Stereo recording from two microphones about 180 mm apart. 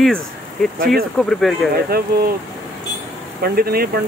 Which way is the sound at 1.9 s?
60° right (ahead or behind).